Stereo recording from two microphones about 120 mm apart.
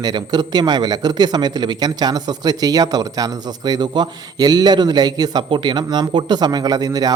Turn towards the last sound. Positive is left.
turn(degrees=-35)  # may be behind; listen again after turning